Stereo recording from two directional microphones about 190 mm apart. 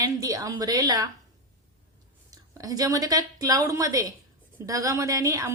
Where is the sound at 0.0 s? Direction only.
20° right (ahead or behind).